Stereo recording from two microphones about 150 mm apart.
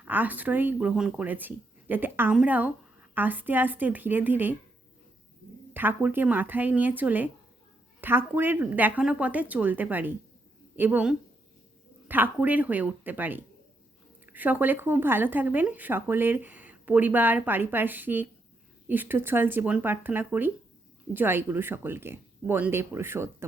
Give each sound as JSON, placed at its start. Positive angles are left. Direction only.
{"t": 0.1, "sound": "speech", "side_deg": -10}
{"t": 5.7, "sound": "speech", "side_deg": -15}